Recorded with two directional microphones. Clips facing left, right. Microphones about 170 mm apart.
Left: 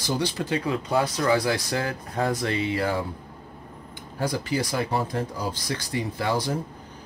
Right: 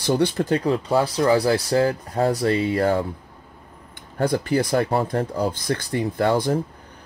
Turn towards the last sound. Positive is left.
turn(degrees=-50)  # may be behind; listen again after turning